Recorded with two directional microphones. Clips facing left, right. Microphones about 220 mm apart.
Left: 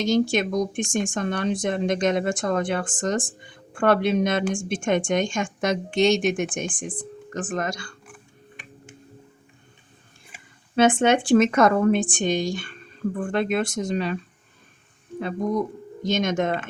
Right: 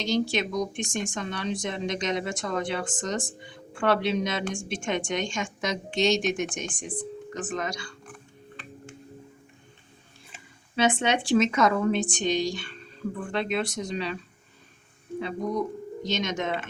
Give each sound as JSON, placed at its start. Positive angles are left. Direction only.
{"t": 0.0, "sound": "speech", "side_deg": 50}
{"t": 8.0, "sound": "music", "side_deg": 15}
{"t": 10.8, "sound": "speech", "side_deg": 50}
{"t": 16.0, "sound": "speech", "side_deg": 50}